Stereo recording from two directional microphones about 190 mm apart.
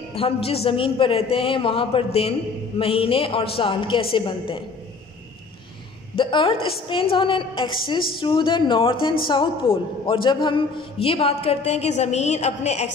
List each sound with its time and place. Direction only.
0.1 s a man's voice: 30° left (ahead or behind)
6.1 s a woman's voice: 25° left (ahead or behind)